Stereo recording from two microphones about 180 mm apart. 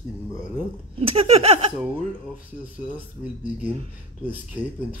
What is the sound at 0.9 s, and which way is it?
Speech, 30° right (ahead or behind).